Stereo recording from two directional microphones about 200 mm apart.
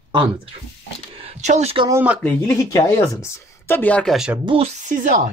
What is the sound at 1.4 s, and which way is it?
Speech, 35° right (ahead or behind).